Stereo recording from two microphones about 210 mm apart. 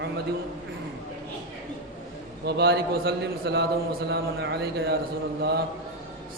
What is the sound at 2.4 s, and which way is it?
A man's voice, 50° right (ahead or behind).